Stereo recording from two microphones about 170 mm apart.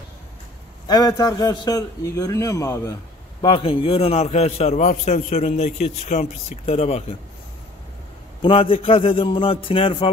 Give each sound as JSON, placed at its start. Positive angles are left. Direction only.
{"t": 0.8, "sound": "a man's voice", "side_deg": 20}
{"t": 3.4, "sound": "a man's voice", "side_deg": 30}
{"t": 8.4, "sound": "a man's voice", "side_deg": 30}